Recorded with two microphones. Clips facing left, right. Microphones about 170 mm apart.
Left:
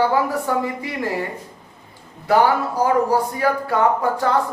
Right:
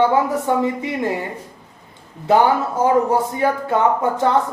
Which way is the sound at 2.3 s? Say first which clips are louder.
Right 1 dB; 20° right (ahead or behind).